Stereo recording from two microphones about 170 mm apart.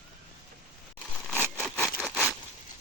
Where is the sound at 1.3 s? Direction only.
5° left (ahead or behind).